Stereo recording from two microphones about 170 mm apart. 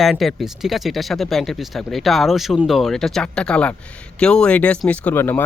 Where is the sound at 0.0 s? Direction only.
Centre (ahead or behind).